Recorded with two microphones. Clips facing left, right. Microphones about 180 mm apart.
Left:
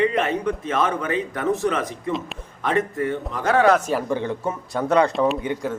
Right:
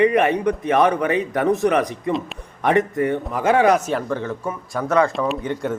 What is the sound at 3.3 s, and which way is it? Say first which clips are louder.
Speech: right 1 dB; 15° right (ahead or behind).